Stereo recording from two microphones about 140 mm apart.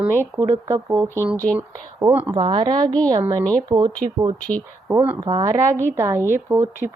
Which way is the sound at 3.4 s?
10° left (ahead or behind).